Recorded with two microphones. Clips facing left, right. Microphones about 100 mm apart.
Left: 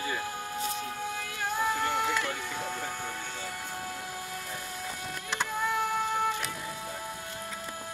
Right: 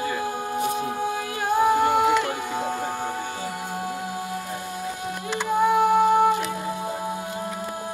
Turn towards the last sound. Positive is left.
turn(degrees=-20)  # may be behind; listen again after turning